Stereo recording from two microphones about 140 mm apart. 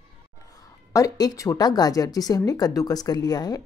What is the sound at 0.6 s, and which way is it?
A woman's voice, 25° left (ahead or behind).